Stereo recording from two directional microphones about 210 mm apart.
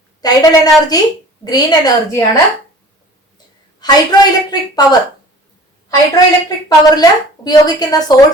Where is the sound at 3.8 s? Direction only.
20° left (ahead or behind).